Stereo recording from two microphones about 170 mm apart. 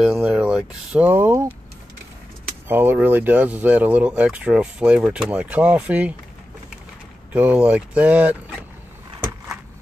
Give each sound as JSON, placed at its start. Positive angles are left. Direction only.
{"t": 0.0, "sound": "speech", "side_deg": -5}
{"t": 2.7, "sound": "speech", "side_deg": -10}
{"t": 7.3, "sound": "speech", "side_deg": -10}